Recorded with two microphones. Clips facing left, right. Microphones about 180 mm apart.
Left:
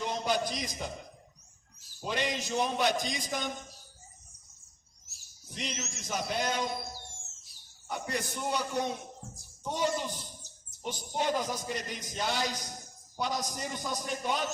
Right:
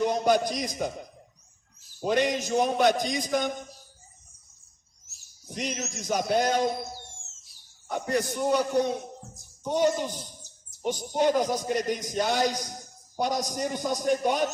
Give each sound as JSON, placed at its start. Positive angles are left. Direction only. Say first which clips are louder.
{"t": 0.0, "sound": "a man's voice", "louder": "right 8 dB", "side_deg": -50}
{"t": 2.0, "sound": "a man's voice", "louder": "right 8 dB", "side_deg": -50}
{"t": 5.5, "sound": "a man's voice", "louder": "right 6 dB", "side_deg": -50}
{"t": 7.9, "sound": "a man's voice", "louder": "right 8 dB", "side_deg": -45}
{"t": 9.7, "sound": "a man's voice", "louder": "right 7 dB", "side_deg": -50}